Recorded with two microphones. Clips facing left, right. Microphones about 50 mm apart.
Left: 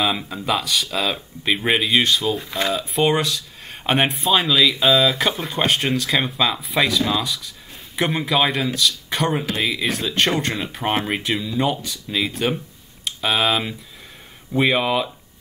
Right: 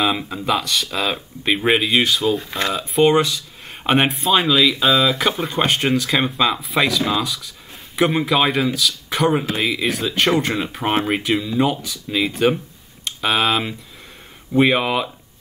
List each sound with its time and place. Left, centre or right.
0.0 s speech: centre